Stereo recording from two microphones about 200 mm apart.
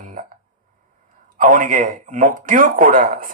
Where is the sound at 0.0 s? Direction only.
45° right (ahead or behind).